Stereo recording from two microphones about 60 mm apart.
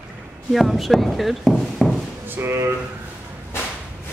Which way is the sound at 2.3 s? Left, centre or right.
Right.